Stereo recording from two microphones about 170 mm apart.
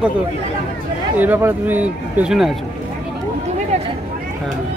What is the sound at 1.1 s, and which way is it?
Speech, 10° right (ahead or behind).